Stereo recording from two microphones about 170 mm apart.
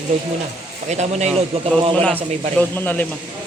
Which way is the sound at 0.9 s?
40° right (ahead or behind).